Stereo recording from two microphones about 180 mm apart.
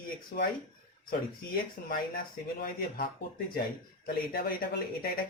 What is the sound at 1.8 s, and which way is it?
Speech, 50° left (ahead or behind).